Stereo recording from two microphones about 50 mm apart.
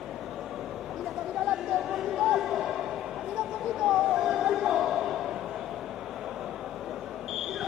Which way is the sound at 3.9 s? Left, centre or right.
Centre.